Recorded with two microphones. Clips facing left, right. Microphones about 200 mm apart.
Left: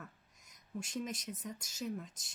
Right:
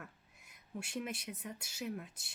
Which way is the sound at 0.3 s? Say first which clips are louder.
Left 2 dB; 60° right (ahead or behind).